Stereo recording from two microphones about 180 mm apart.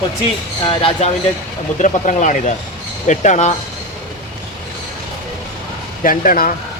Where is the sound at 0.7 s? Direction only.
30° left (ahead or behind).